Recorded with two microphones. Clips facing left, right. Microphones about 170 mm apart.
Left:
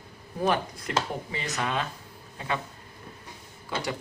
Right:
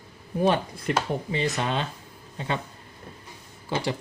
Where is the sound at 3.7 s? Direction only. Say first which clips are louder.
Right 4 dB; 25° right (ahead or behind).